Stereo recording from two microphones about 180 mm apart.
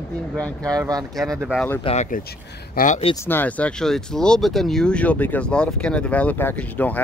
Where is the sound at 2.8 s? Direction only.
45° left (ahead or behind).